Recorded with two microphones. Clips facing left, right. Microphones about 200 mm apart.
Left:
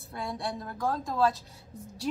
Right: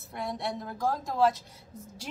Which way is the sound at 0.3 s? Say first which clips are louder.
Right 1 dB; 20° right (ahead or behind).